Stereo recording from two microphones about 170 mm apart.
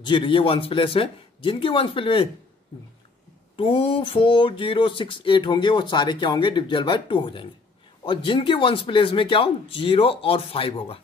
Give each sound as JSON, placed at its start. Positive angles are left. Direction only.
{"t": 0.0, "sound": "speech", "side_deg": 30}
{"t": 3.5, "sound": "speech", "side_deg": 35}